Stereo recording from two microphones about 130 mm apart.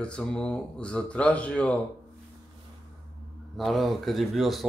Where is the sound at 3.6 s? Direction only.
Centre (ahead or behind).